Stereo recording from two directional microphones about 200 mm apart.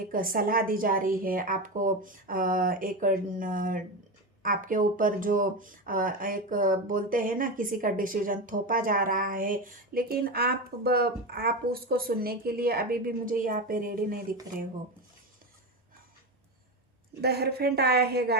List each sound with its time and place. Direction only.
0.0 s speech: 45° right (ahead or behind)
17.2 s speech: 55° right (ahead or behind)